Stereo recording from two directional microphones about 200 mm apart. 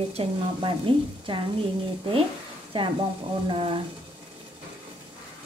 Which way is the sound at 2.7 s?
25° right (ahead or behind).